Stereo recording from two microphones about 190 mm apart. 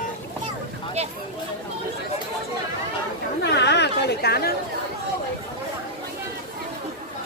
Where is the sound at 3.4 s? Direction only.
65° left (ahead or behind).